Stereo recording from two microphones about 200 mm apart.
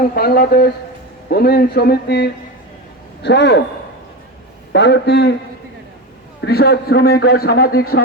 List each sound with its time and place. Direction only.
0.1 s a man's voice: 50° left (ahead or behind)
4.7 s a man's voice: 60° left (ahead or behind)
6.4 s a man's voice: 55° left (ahead or behind)